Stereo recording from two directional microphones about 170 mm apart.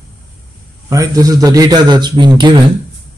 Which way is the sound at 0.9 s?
20° right (ahead or behind).